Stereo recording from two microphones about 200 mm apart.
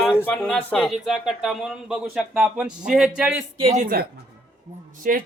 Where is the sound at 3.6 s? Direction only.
35° right (ahead or behind).